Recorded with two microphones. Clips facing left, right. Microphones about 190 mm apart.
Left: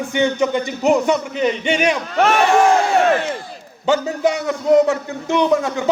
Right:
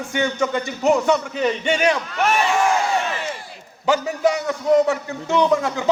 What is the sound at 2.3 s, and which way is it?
Speech, 65° left (ahead or behind).